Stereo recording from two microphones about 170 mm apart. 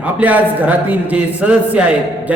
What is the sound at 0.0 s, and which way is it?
A man's voice, 10° right (ahead or behind).